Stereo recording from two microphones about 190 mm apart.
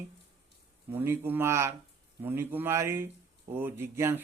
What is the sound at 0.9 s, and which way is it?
A man's voice, 10° right (ahead or behind).